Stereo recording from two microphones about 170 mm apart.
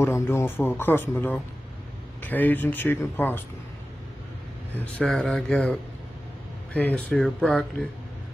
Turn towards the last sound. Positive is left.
turn(degrees=5)  # may be behind; listen again after turning